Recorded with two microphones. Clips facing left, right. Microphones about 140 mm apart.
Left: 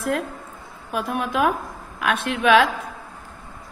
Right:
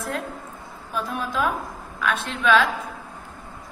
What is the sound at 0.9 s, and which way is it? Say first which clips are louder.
A woman's voice: left 3 dB; 65° left (ahead or behind).